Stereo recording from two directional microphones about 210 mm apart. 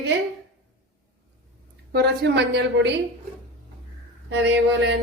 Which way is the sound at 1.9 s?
55° right (ahead or behind).